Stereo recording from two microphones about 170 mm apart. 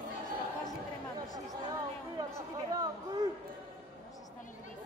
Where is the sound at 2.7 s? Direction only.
25° right (ahead or behind).